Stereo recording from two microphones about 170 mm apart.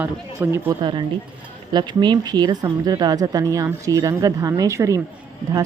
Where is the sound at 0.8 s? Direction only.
25° right (ahead or behind).